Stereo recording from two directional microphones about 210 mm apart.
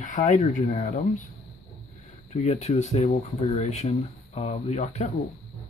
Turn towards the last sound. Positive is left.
turn(degrees=30)  # may be behind; listen again after turning